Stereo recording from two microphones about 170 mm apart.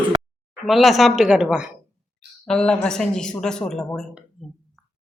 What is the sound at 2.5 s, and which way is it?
Speech, 5° left (ahead or behind).